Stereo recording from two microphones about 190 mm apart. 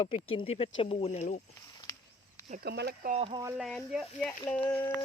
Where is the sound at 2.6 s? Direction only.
60° right (ahead or behind).